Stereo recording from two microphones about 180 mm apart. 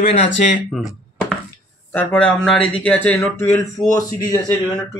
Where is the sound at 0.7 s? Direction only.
Centre (ahead or behind).